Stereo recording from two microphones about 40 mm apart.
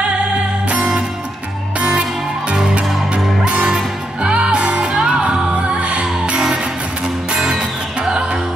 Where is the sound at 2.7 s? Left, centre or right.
Right.